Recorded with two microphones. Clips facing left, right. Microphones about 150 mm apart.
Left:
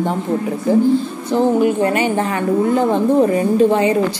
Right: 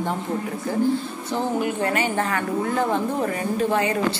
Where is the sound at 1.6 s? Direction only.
20° left (ahead or behind).